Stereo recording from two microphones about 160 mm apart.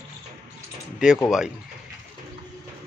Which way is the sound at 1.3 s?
5° right (ahead or behind).